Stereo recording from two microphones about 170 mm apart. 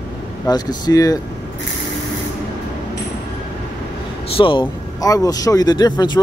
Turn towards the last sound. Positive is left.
turn(degrees=25)  # may be behind; listen again after turning